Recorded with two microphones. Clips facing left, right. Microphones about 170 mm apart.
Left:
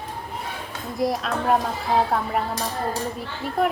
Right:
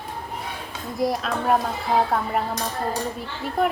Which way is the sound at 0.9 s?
Centre (ahead or behind).